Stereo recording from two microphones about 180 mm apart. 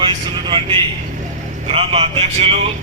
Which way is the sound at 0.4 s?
25° right (ahead or behind).